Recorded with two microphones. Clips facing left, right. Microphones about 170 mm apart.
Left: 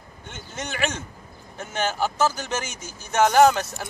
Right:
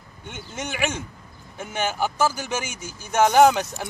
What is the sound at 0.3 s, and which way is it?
Speech, 10° right (ahead or behind).